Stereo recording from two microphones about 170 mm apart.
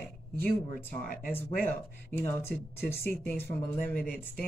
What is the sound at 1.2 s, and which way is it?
Speech, 10° left (ahead or behind).